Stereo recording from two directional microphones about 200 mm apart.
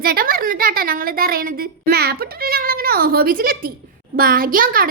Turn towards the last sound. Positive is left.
turn(degrees=-45)  # may be behind; listen again after turning